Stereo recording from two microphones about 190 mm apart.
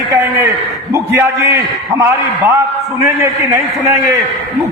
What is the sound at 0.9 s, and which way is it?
A man's voice, 15° right (ahead or behind).